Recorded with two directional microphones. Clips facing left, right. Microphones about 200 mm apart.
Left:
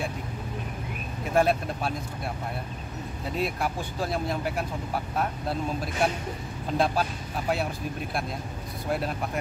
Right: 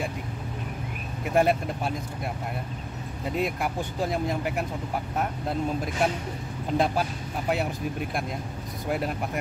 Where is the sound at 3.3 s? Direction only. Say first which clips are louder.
Right 1 dB; 15° right (ahead or behind).